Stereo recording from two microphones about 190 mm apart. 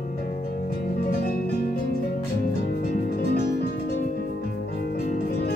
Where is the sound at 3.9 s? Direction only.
45° left (ahead or behind).